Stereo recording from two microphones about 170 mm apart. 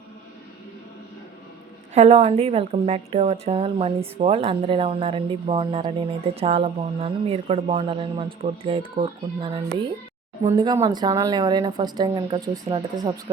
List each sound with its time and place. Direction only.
1.9 s speech: 40° right (ahead or behind)